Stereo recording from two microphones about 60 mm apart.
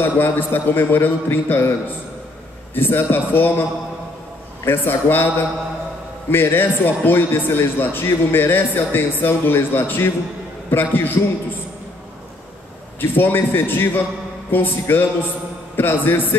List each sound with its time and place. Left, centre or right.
0.0 s a man's voice: left
2.7 s a man's voice: left
4.6 s a man's voice: left
6.3 s a man's voice: left
13.0 s a man's voice: left